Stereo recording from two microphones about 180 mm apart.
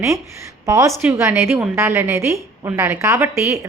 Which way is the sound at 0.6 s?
20° right (ahead or behind).